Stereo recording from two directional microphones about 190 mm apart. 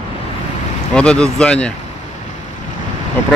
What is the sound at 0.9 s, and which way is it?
Speech, 5° left (ahead or behind).